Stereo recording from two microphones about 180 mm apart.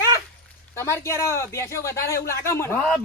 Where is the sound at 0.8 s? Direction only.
15° left (ahead or behind).